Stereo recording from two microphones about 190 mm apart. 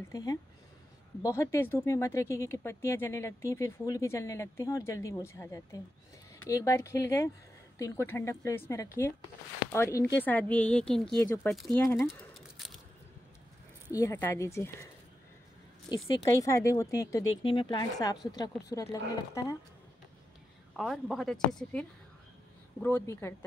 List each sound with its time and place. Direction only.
0.1 s a woman's voice: 20° left (ahead or behind)
12.4 s a sound: centre (ahead or behind)
13.9 s speech: 15° left (ahead or behind)
16.3 s speech: 15° left (ahead or behind)
20.7 s a woman's voice: centre (ahead or behind)